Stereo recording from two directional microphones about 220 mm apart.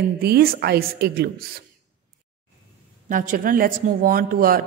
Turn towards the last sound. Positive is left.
turn(degrees=-40)  # may be behind; listen again after turning